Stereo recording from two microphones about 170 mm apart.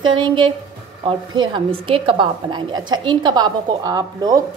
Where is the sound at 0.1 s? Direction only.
30° right (ahead or behind).